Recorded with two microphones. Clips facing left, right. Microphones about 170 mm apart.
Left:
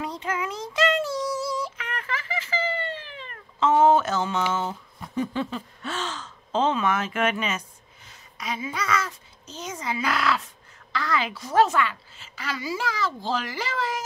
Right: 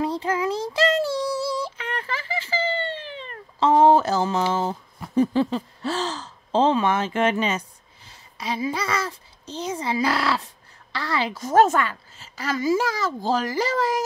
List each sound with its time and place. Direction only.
0.0 s child singing: 30° right (ahead or behind)
5.1 s speech: 35° right (ahead or behind)
11.3 s a woman's voice: 45° right (ahead or behind)